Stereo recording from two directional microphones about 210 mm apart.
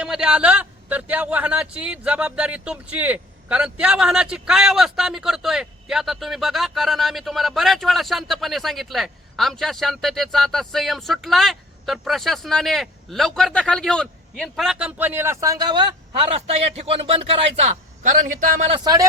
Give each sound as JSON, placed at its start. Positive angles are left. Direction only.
{"t": 0.0, "sound": "a man's voice", "side_deg": -5}
{"t": 18.7, "sound": "speech", "side_deg": -20}